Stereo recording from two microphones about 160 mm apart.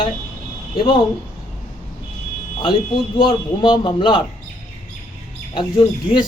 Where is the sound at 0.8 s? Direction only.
30° left (ahead or behind).